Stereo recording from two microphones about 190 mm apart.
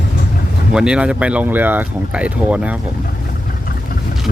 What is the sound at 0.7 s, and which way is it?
Speech, 5° right (ahead or behind).